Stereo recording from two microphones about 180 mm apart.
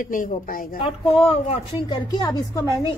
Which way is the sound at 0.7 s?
30° left (ahead or behind).